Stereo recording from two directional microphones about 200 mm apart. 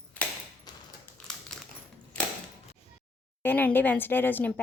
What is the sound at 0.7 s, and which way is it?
Typewriter, 20° left (ahead or behind).